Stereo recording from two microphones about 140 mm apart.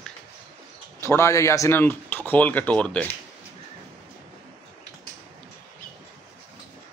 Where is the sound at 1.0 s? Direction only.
20° left (ahead or behind).